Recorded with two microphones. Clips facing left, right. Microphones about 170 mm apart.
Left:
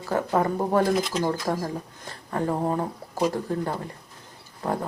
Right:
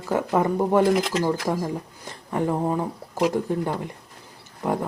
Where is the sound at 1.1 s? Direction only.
5° right (ahead or behind).